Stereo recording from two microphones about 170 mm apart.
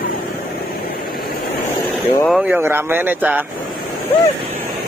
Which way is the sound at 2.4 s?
10° right (ahead or behind).